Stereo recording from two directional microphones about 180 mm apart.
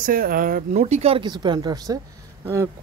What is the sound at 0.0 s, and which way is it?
Speech, 50° right (ahead or behind).